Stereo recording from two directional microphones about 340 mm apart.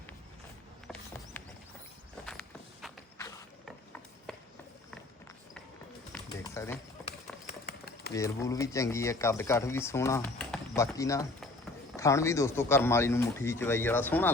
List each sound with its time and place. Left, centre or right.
1.4 s horse: centre
2.8 s mechanisms: centre
4.3 s walk: centre
6.2 s a sound: centre
7.4 s horse: left
8.1 s speech: centre